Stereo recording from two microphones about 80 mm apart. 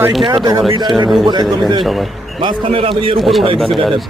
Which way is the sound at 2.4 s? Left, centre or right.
Right.